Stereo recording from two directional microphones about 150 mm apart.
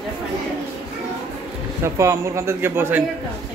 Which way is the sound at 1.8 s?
20° right (ahead or behind).